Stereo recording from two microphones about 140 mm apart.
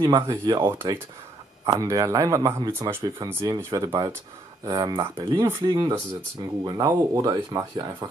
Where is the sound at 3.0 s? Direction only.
25° right (ahead or behind).